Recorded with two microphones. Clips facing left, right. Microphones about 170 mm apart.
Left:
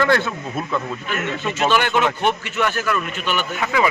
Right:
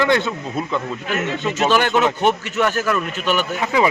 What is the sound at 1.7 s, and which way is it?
Speech, 40° right (ahead or behind).